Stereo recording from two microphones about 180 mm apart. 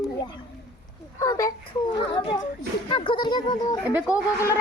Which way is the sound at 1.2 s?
20° left (ahead or behind).